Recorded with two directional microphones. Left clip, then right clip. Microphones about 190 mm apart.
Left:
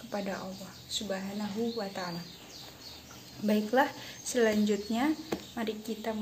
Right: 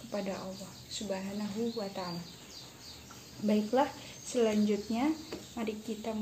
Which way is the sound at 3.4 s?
Centre (ahead or behind).